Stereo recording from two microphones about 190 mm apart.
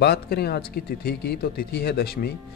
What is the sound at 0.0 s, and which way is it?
Speech, 60° left (ahead or behind).